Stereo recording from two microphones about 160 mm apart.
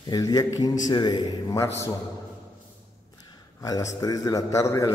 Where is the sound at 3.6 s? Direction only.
20° left (ahead or behind).